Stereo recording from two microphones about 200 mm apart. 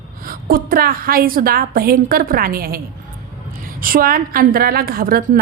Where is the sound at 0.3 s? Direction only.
45° right (ahead or behind).